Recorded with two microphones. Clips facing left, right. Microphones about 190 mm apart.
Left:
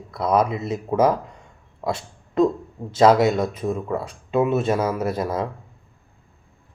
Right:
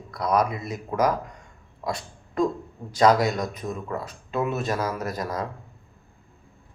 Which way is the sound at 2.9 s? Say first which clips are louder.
Left 4 dB; 25° left (ahead or behind).